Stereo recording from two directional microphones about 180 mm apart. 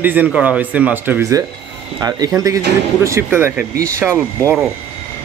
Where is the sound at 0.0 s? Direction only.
10° right (ahead or behind).